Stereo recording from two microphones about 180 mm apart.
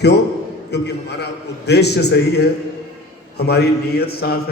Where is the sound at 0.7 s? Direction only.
65° left (ahead or behind).